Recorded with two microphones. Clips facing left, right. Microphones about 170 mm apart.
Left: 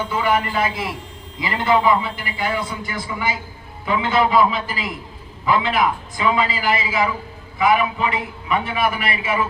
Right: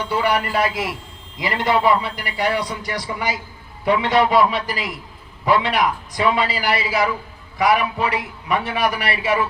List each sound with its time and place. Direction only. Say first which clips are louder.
0.0 s a man's voice: even; 35° right (ahead or behind)